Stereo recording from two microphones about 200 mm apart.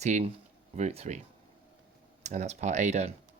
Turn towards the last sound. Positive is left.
turn(degrees=-35)  # may be behind; listen again after turning